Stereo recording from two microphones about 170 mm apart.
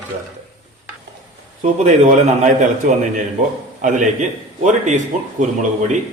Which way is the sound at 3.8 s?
45° right (ahead or behind).